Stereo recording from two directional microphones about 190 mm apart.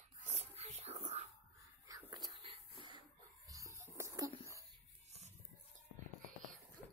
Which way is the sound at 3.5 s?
15° right (ahead or behind).